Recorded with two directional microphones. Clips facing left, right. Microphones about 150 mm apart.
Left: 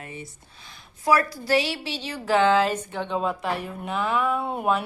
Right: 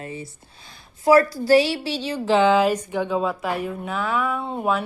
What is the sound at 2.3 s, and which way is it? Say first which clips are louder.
Speech: right 2 dB; 15° right (ahead or behind).